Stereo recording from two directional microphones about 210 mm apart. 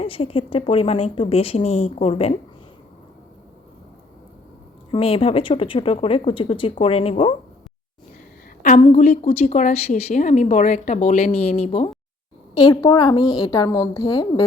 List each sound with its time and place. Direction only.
0.0 s a woman's voice: 25° left (ahead or behind)
4.9 s a woman's voice: 25° left (ahead or behind)
9.0 s a woman's voice: 30° left (ahead or behind)
12.5 s a woman's voice: 15° left (ahead or behind)